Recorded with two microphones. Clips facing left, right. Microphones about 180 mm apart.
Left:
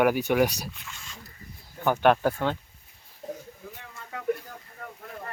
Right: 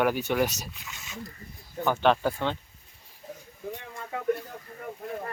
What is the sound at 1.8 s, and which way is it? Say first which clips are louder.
Speech: left 2 dB; 15° left (ahead or behind).